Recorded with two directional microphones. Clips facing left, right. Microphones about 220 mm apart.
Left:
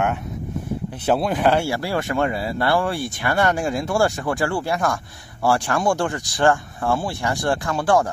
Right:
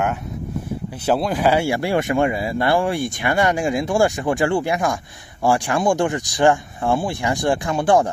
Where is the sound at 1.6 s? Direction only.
20° right (ahead or behind).